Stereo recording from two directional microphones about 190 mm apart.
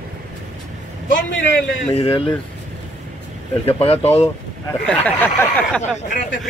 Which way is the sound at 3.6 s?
30° left (ahead or behind).